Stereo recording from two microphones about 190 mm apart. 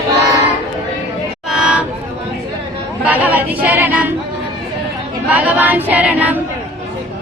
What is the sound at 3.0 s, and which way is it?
Speech, 10° right (ahead or behind).